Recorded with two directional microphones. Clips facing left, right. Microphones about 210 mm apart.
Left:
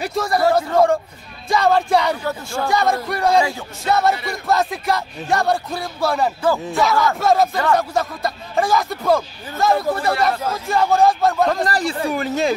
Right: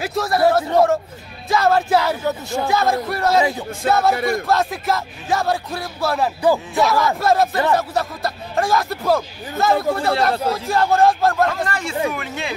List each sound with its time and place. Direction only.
0.0 s speech: centre (ahead or behind)
2.2 s speech: 20° right (ahead or behind)
2.7 s speech: centre (ahead or behind)
11.6 s speech: 35° left (ahead or behind)